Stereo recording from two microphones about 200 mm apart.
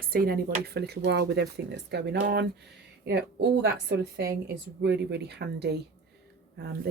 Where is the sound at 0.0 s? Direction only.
45° right (ahead or behind).